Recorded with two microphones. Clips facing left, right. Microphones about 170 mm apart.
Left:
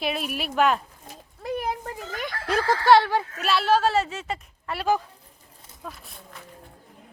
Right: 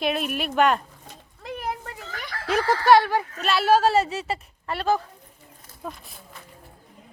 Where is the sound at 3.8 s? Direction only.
40° right (ahead or behind).